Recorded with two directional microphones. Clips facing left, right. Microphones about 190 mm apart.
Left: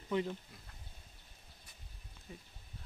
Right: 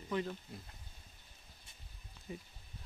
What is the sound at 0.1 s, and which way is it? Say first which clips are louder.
Speech: left 2 dB; 20° left (ahead or behind).